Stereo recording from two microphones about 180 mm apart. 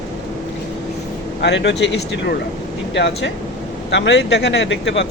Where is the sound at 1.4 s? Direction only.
75° left (ahead or behind).